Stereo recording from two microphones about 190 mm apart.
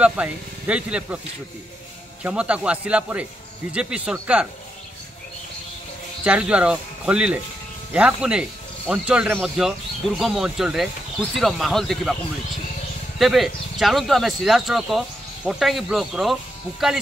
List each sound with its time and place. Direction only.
0.0 s speech: 5° right (ahead or behind)
2.2 s speech: 5° right (ahead or behind)
6.2 s speech: 5° right (ahead or behind)
13.2 s speech: centre (ahead or behind)